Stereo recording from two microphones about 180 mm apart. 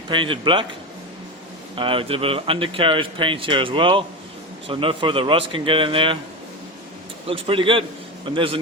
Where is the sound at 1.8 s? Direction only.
30° right (ahead or behind).